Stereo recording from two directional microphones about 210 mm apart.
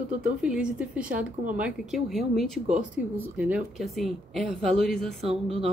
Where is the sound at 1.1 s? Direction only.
40° right (ahead or behind).